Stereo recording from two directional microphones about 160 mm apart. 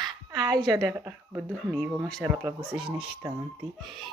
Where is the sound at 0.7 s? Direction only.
20° right (ahead or behind).